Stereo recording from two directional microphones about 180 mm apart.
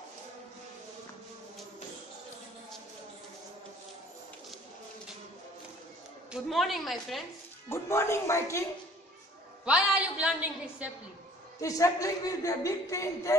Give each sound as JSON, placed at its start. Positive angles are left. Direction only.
{"t": 6.3, "sound": "a woman's voice", "side_deg": 0}
{"t": 7.7, "sound": "speech", "side_deg": 15}
{"t": 9.7, "sound": "a woman's voice", "side_deg": -5}
{"t": 11.6, "sound": "speech", "side_deg": 20}